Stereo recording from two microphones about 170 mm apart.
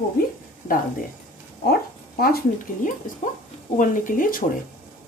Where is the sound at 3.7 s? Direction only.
50° left (ahead or behind).